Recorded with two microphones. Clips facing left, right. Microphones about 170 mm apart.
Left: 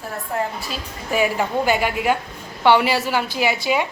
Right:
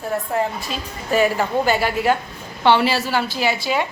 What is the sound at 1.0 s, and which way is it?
A woman's voice, 10° left (ahead or behind).